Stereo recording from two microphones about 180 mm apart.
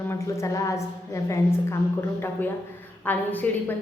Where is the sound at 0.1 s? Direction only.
15° left (ahead or behind).